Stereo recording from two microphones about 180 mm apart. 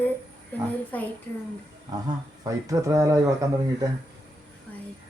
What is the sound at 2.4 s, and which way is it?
Speech, 20° right (ahead or behind).